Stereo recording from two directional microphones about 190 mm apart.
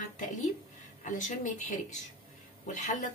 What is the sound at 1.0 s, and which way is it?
A woman's voice, 40° left (ahead or behind).